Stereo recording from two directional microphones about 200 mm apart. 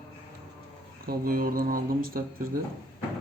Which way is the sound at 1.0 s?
45° right (ahead or behind).